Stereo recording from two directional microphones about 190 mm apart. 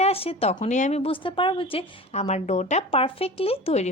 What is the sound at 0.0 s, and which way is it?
A woman's voice, 30° left (ahead or behind).